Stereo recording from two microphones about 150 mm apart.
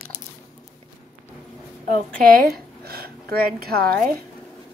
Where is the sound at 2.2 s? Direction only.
85° right.